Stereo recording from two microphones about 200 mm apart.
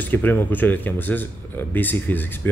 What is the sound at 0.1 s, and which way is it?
Speech, 10° left (ahead or behind).